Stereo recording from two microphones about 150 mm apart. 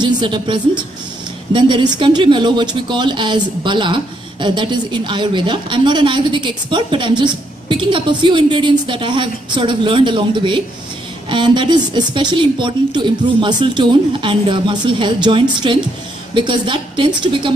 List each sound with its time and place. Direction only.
0.0 s speech: 30° right (ahead or behind)